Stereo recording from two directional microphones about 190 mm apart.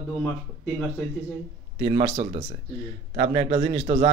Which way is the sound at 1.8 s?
30° right (ahead or behind).